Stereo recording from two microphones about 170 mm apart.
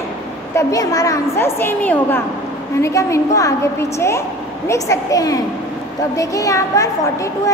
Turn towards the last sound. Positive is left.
turn(degrees=20)  # may be behind; listen again after turning